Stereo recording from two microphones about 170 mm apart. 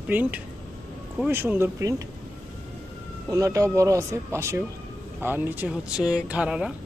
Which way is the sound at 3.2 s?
20° right (ahead or behind).